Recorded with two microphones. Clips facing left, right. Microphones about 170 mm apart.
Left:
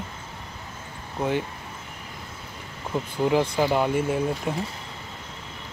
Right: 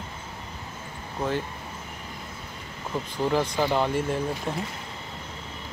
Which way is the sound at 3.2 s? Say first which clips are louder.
Left 3 dB; 5° left (ahead or behind).